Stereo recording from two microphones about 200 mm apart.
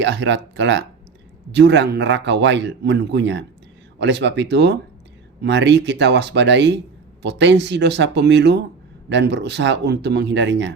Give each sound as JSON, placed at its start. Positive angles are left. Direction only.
{"t": 0.0, "sound": "a man's voice", "side_deg": -60}